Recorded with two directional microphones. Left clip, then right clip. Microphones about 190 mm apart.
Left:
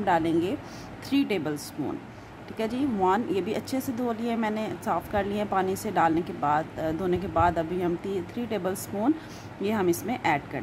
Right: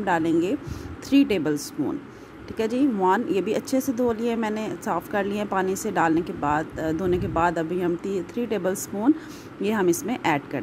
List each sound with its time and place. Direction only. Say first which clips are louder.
0.0 s speech: right 2 dB; 10° right (ahead or behind)